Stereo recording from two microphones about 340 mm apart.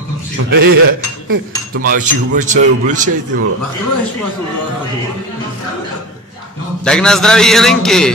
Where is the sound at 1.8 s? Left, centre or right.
Right.